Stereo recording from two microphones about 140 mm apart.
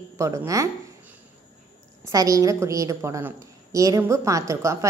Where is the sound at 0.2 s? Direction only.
20° right (ahead or behind).